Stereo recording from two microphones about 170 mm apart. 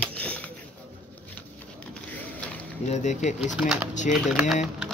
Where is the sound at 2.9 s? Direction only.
45° left (ahead or behind).